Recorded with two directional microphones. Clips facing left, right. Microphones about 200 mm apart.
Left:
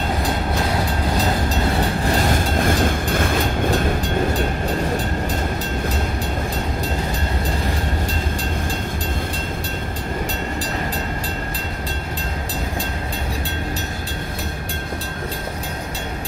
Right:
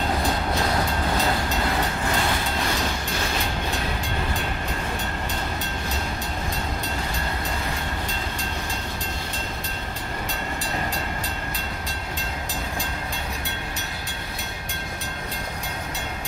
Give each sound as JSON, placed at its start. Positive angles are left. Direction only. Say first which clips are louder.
{"t": 2.0, "sound": "train", "louder": "left 5 dB", "side_deg": 40}